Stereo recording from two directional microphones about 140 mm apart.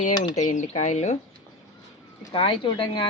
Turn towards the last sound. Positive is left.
turn(degrees=35)  # may be behind; listen again after turning